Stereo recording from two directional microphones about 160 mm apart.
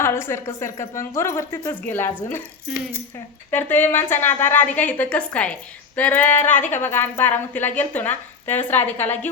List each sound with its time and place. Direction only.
0.0 s a woman's voice: 15° left (ahead or behind)
3.5 s a woman's voice: 10° left (ahead or behind)